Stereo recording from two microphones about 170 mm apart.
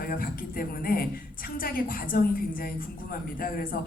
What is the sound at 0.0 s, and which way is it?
A man's voice, 60° left (ahead or behind).